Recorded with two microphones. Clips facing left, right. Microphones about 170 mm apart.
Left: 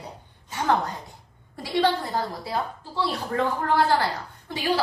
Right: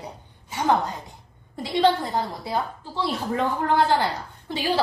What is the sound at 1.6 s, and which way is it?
A woman's voice, 20° right (ahead or behind).